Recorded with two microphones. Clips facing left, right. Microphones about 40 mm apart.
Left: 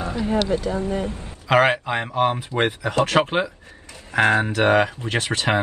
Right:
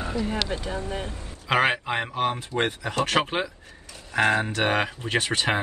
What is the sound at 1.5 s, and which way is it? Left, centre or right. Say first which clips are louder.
Speech: left 5 dB; centre.